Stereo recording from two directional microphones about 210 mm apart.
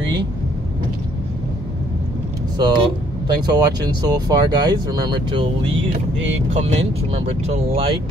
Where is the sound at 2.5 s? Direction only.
20° right (ahead or behind).